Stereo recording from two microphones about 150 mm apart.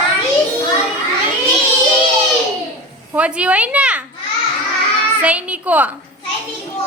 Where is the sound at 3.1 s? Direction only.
10° right (ahead or behind).